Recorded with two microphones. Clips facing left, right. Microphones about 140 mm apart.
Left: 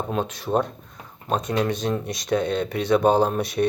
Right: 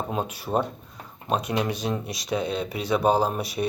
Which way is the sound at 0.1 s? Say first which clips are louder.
Left 4 dB; 10° right (ahead or behind).